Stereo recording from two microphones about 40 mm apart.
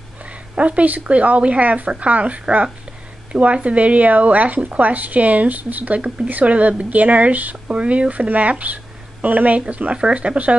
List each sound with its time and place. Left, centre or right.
0.6 s speech: right
5.9 s speech: right
6.2 s speech: right
7.7 s speech: right